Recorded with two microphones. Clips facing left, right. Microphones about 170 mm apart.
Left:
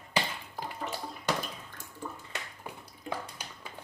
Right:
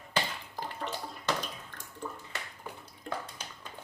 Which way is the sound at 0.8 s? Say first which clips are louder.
Even; 5° left (ahead or behind).